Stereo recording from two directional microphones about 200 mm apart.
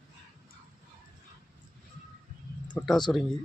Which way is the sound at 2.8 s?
Centre (ahead or behind).